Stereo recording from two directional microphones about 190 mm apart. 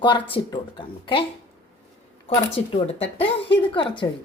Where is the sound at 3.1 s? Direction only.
30° left (ahead or behind).